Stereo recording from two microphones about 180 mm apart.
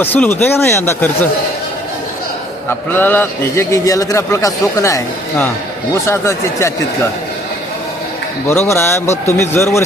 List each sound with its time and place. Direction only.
0.0 s a man's voice: 10° left (ahead or behind)
2.6 s a man's voice: 10° left (ahead or behind)
8.4 s a man's voice: 15° left (ahead or behind)